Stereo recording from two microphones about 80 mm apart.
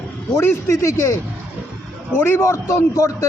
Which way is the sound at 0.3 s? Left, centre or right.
Left.